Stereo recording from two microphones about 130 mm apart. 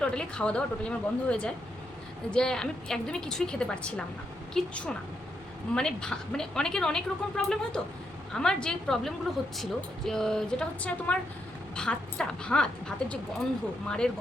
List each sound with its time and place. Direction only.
0.0 s a woman's voice: 5° left (ahead or behind)